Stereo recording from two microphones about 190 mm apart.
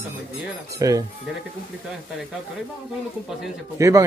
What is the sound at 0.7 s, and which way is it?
Speech, 20° right (ahead or behind).